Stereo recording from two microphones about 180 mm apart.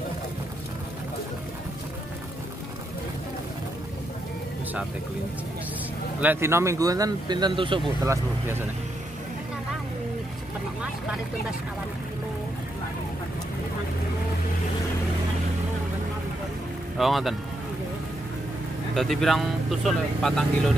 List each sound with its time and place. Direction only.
6.2 s speech: 15° right (ahead or behind)
8.0 s speech: 15° right (ahead or behind)
17.0 s speech: centre (ahead or behind)
18.9 s speech: centre (ahead or behind)